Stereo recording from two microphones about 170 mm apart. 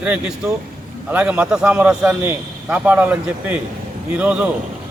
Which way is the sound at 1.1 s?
10° right (ahead or behind).